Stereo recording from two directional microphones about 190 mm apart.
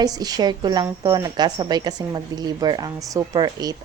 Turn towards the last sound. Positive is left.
turn(degrees=-20)  # may be behind; listen again after turning